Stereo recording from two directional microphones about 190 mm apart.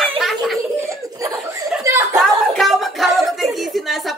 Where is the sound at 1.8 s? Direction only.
15° right (ahead or behind).